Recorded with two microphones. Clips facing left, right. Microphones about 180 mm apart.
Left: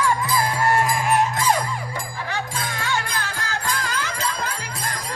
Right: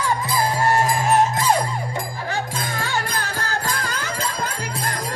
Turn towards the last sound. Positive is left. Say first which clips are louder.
# right 1 dB
turn(degrees=-40)  # may be behind; listen again after turning